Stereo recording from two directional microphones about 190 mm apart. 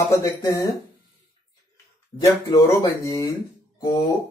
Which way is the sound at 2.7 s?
15° left (ahead or behind).